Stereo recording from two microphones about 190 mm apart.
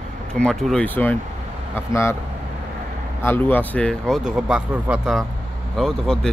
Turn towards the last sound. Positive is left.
turn(degrees=5)  # may be behind; listen again after turning